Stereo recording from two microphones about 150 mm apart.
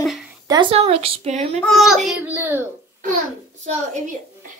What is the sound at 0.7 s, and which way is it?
Speech, 40° right (ahead or behind).